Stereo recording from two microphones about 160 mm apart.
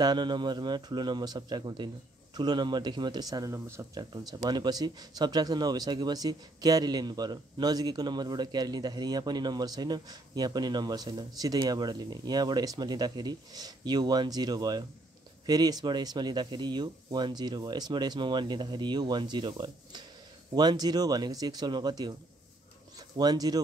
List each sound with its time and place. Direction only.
0.0 s speech: 30° right (ahead or behind)